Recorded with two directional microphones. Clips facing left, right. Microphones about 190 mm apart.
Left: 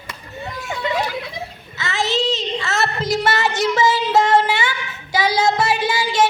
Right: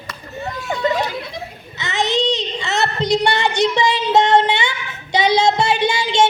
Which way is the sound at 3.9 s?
25° right (ahead or behind).